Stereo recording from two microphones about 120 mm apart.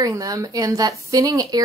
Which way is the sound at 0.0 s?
30° right (ahead or behind).